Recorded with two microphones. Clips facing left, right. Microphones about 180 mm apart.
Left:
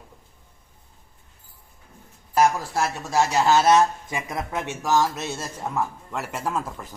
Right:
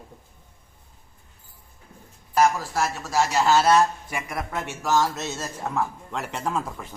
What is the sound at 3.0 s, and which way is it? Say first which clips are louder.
Speech: left 1 dB; 20° left (ahead or behind).